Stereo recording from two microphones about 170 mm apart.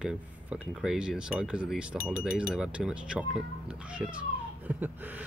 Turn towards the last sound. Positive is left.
turn(degrees=-10)  # may be behind; listen again after turning